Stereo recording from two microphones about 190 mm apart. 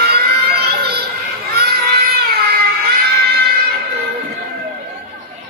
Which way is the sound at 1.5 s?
55° right (ahead or behind).